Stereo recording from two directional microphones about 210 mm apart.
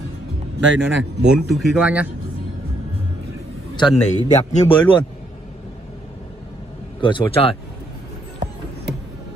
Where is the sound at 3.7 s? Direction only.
20° left (ahead or behind).